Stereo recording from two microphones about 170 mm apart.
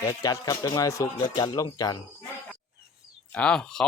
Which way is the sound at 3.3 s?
5° left (ahead or behind).